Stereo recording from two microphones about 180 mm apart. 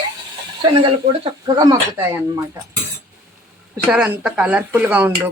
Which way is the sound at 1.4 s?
25° right (ahead or behind).